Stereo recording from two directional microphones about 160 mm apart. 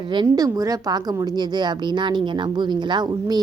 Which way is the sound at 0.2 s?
20° right (ahead or behind).